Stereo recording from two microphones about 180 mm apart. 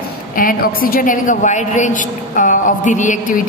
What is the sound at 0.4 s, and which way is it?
A woman's voice, 50° left (ahead or behind).